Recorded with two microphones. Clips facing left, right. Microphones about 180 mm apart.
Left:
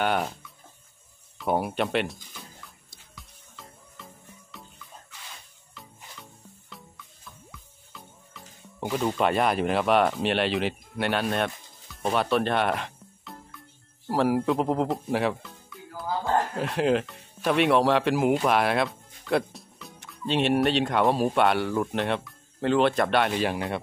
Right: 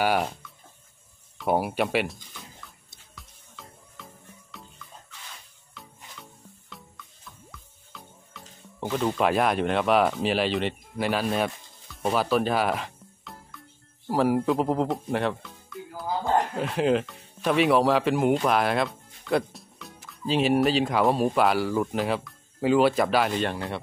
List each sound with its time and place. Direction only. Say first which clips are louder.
0.0 s speech: right 2 dB; 5° right (ahead or behind)
1.4 s speech: right 1 dB; 5° right (ahead or behind)
3.2 s music: right 1 dB; centre (ahead or behind)
5.8 s music: even; centre (ahead or behind)
7.9 s speech: right 1 dB; centre (ahead or behind)
16.1 s a sound: right 1 dB; 15° right (ahead or behind)
16.5 s speech: even; centre (ahead or behind)